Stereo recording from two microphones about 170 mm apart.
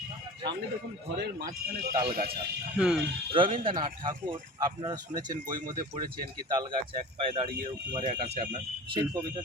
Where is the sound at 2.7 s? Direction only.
5° right (ahead or behind).